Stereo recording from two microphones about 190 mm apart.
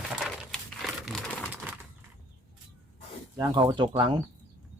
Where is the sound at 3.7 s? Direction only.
25° right (ahead or behind).